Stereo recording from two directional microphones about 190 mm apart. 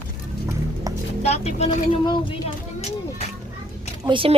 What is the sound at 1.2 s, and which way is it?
Speech, 35° left (ahead or behind).